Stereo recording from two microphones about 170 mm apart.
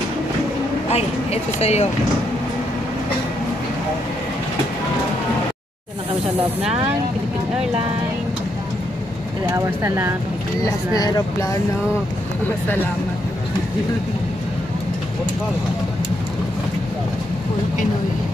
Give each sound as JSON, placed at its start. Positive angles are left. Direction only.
{"t": 0.9, "sound": "speech", "side_deg": 35}
{"t": 9.5, "sound": "speech", "side_deg": -15}
{"t": 10.6, "sound": "speech", "side_deg": 20}